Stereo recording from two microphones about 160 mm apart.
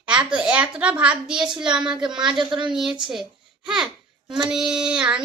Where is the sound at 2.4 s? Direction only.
30° right (ahead or behind).